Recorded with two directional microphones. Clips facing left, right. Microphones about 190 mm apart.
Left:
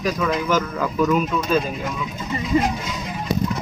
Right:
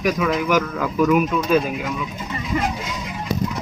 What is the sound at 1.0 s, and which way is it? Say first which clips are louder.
Speech: right 3 dB; 10° right (ahead or behind).